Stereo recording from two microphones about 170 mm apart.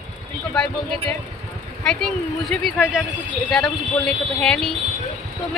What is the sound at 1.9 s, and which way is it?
Speech, centre (ahead or behind).